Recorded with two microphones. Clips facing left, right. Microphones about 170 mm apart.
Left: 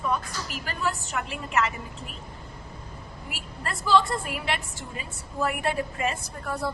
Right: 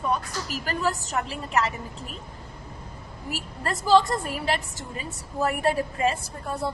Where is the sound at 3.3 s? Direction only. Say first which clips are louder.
Right 5 dB; 40° right (ahead or behind).